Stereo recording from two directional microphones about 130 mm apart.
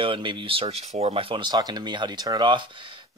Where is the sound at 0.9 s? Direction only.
55° right (ahead or behind).